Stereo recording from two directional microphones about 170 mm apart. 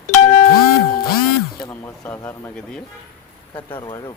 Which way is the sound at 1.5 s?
20° left (ahead or behind).